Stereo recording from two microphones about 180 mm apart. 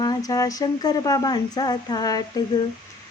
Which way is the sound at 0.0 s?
20° left (ahead or behind).